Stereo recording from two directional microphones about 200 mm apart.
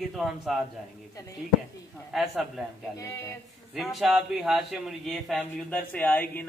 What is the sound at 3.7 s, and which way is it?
Speech, centre (ahead or behind).